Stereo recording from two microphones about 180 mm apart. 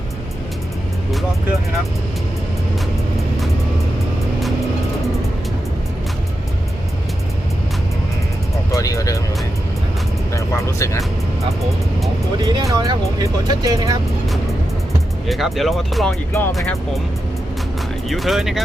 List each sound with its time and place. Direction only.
8.7 s speech: 20° left (ahead or behind)
10.3 s speech: 15° left (ahead or behind)
12.4 s speech: 20° right (ahead or behind)
15.3 s speech: centre (ahead or behind)
16.3 s speech: 15° left (ahead or behind)
16.6 s speech: centre (ahead or behind)
18.1 s speech: centre (ahead or behind)